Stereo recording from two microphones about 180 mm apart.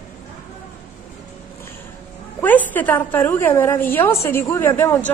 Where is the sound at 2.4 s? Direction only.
10° left (ahead or behind).